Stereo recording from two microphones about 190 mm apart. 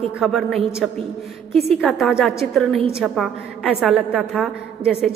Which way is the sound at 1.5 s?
30° right (ahead or behind).